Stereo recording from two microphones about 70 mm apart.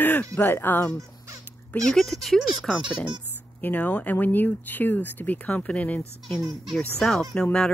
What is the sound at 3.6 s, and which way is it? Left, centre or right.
Speech, left.